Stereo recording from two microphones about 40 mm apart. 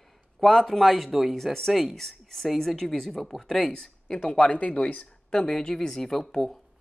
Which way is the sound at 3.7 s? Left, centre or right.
Left.